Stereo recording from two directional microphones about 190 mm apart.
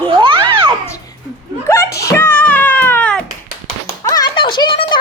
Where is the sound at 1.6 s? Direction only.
15° left (ahead or behind).